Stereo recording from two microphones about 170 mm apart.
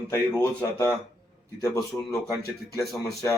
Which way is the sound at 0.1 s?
15° left (ahead or behind).